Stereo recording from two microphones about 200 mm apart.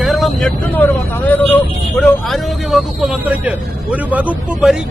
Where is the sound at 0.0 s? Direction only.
Centre (ahead or behind).